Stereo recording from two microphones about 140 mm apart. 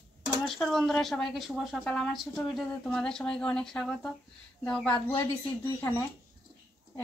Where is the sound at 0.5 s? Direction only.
Centre (ahead or behind).